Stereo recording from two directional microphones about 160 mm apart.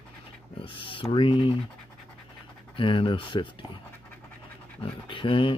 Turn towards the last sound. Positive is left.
turn(degrees=35)  # may be behind; listen again after turning